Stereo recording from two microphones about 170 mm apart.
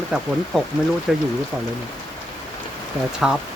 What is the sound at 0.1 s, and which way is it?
Speech, 5° right (ahead or behind).